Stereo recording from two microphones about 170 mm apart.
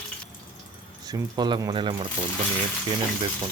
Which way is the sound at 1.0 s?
25° right (ahead or behind).